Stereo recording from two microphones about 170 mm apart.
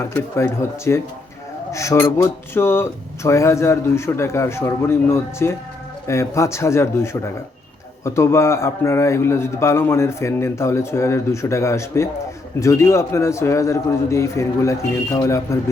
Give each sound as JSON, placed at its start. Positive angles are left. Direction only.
{"t": 0.0, "sound": "a man's voice", "side_deg": 15}